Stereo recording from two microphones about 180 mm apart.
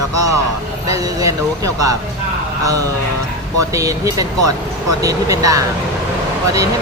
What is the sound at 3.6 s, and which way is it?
Speech, 20° right (ahead or behind).